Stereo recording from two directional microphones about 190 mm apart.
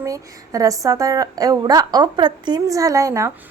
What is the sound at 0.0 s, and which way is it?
A woman's voice, 15° right (ahead or behind).